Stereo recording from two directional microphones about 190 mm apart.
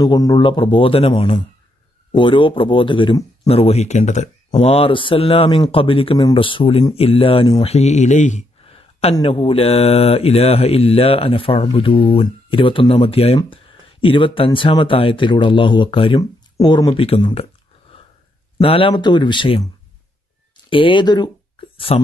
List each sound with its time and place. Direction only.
0.0 s speech: 20° left (ahead or behind)
7.7 s speech: 35° left (ahead or behind)
17.9 s a sound: 30° left (ahead or behind)
18.6 s speech: 30° left (ahead or behind)